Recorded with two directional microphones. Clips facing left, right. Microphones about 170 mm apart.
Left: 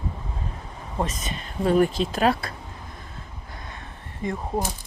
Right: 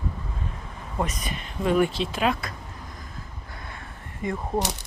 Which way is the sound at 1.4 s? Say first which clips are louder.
Left 2 dB; 35° left (ahead or behind).